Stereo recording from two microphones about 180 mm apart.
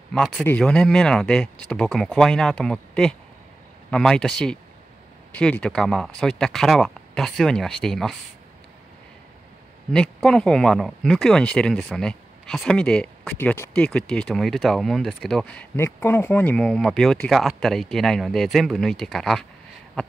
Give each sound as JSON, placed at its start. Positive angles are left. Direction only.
{"t": 0.1, "sound": "speech", "side_deg": 5}
{"t": 9.9, "sound": "speech", "side_deg": 5}